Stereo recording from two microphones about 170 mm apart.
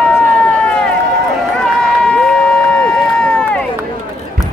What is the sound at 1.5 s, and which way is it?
Run, 5° left (ahead or behind).